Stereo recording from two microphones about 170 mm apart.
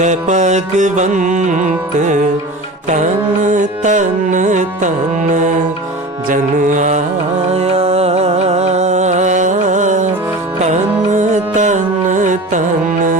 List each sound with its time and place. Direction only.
0.0 s music: 45° right (ahead or behind)
3.4 s music: 45° right (ahead or behind)
6.2 s music: 50° right (ahead or behind)
11.1 s music: 45° right (ahead or behind)